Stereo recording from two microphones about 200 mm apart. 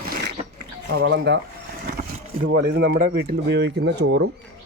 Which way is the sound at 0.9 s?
55° right (ahead or behind).